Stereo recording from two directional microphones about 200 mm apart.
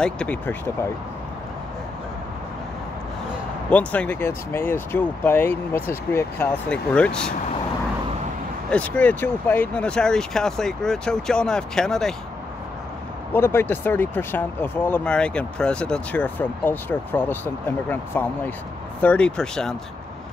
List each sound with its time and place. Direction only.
0.0 s speech: 5° left (ahead or behind)
3.7 s speech: 5° left (ahead or behind)
8.6 s speech: 5° left (ahead or behind)
13.3 s speech: 10° left (ahead or behind)